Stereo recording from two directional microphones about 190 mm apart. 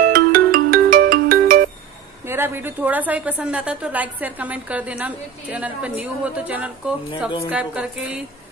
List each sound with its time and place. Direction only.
0.0 s ringtone: 50° right (ahead or behind)
2.2 s a woman's voice: 10° right (ahead or behind)